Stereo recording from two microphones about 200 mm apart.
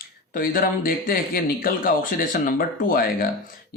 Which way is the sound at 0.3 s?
45° left (ahead or behind).